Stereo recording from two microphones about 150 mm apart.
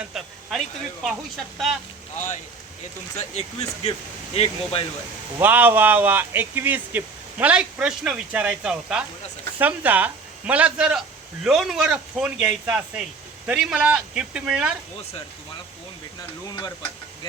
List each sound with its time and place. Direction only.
0.0 s a sound: 5° right (ahead or behind)
1.0 s speech: centre (ahead or behind)
3.3 s speech: 45° left (ahead or behind)
5.4 s speech: 15° right (ahead or behind)